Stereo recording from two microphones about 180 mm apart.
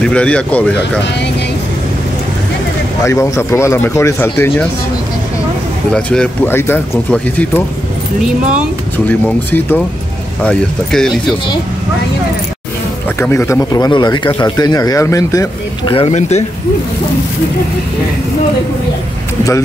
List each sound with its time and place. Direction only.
0.0 s speech: 5° left (ahead or behind)
3.0 s speech: 15° left (ahead or behind)
5.9 s speech: 5° left (ahead or behind)
8.2 s speech: 5° right (ahead or behind)
8.9 s speech: 10° left (ahead or behind)
13.2 s speech: 10° left (ahead or behind); by 16.4 s 40° left (ahead or behind)